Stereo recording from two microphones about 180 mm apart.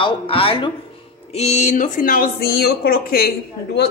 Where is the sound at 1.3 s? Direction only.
40° left (ahead or behind).